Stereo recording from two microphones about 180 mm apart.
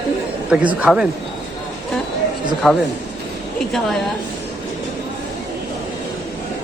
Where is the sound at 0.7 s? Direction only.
5° right (ahead or behind).